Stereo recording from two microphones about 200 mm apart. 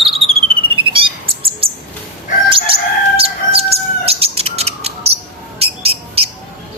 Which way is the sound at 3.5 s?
30° right (ahead or behind).